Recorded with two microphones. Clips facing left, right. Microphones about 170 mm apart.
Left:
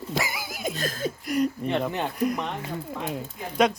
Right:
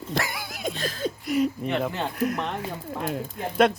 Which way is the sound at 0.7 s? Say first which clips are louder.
Even; 45° left (ahead or behind).